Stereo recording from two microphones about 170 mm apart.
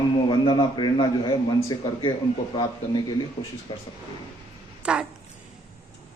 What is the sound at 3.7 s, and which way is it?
Speech, 30° left (ahead or behind).